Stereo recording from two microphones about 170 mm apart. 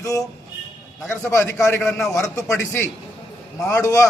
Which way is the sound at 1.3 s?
15° left (ahead or behind).